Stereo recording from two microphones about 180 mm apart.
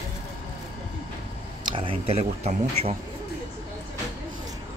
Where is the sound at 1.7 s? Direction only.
30° right (ahead or behind).